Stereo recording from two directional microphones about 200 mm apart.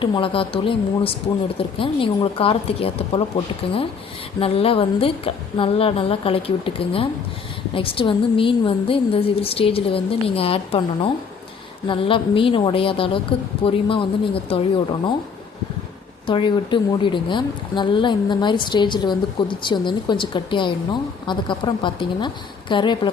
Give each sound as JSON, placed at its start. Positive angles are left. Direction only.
{"t": 0.0, "sound": "speech", "side_deg": 25}
{"t": 16.2, "sound": "speech", "side_deg": 25}